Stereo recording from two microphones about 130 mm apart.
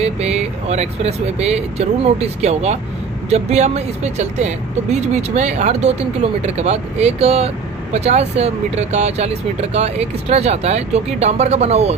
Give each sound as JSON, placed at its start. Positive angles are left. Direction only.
{"t": 0.0, "sound": "speech", "side_deg": -55}